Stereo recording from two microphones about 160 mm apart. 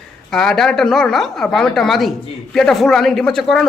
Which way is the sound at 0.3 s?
Centre (ahead or behind).